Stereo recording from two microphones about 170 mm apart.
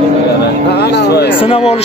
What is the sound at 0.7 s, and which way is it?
Speech, 80° left.